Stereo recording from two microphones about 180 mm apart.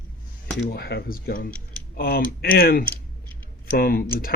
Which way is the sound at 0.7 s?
60° left (ahead or behind).